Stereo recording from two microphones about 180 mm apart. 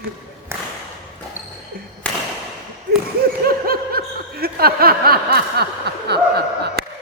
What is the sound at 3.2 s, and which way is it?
Snicker, 55° right (ahead or behind).